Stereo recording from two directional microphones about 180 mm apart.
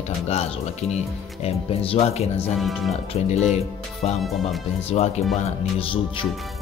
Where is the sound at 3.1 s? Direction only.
35° left (ahead or behind).